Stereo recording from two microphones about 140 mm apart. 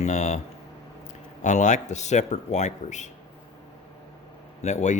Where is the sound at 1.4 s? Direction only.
60° left (ahead or behind).